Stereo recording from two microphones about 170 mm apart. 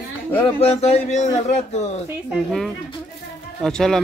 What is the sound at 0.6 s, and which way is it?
Speech, 35° left (ahead or behind).